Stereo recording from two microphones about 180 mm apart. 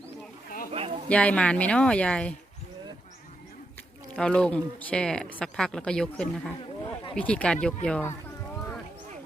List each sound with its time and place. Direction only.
0.7 s a sound: 35° right (ahead or behind)
1.1 s speech: 5° left (ahead or behind)
4.1 s speech: 5° left (ahead or behind)